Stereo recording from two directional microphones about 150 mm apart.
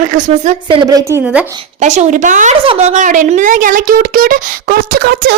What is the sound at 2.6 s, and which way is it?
Speech, 45° right (ahead or behind).